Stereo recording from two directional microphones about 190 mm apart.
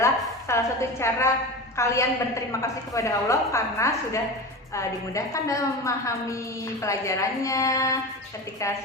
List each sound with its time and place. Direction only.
0.0 s a woman's voice: 15° left (ahead or behind)